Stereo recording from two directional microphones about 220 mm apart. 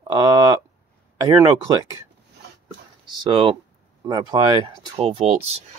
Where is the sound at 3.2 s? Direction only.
20° right (ahead or behind).